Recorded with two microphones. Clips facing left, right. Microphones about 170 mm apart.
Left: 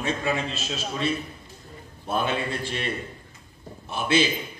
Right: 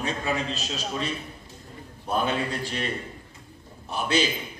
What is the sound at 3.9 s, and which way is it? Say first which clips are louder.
Speech: left 2 dB; 40° right (ahead or behind).